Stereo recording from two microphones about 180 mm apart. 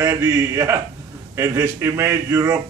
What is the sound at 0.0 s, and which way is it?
A man's voice, 15° right (ahead or behind).